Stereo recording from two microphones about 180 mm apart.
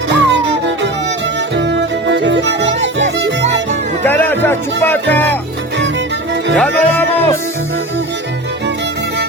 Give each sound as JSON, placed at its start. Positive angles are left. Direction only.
{"t": 0.1, "sound": "music", "side_deg": -80}
{"t": 4.0, "sound": "music", "side_deg": 10}
{"t": 6.6, "sound": "music", "side_deg": 10}